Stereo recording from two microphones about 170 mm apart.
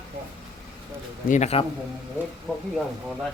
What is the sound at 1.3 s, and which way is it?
Speech, 40° left (ahead or behind).